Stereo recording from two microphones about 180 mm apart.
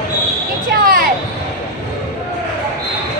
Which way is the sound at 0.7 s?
55° right (ahead or behind).